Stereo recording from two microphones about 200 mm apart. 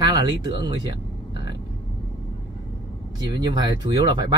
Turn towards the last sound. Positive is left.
turn(degrees=-20)  # may be behind; listen again after turning